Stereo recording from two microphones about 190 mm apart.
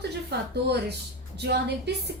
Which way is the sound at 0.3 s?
60° right (ahead or behind).